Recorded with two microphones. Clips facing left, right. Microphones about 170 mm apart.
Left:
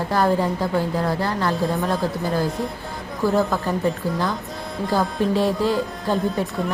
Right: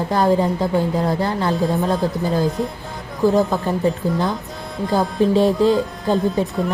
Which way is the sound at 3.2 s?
20° right (ahead or behind).